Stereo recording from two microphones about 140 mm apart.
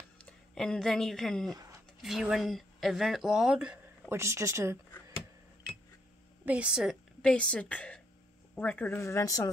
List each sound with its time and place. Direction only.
0.6 s speech: 5° left (ahead or behind)
4.1 s speech: 20° right (ahead or behind)
6.4 s a woman's voice: 10° right (ahead or behind); by 9.5 s 20° left (ahead or behind)